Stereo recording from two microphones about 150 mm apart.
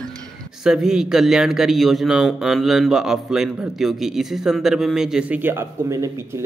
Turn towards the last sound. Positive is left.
turn(degrees=-20)  # may be behind; listen again after turning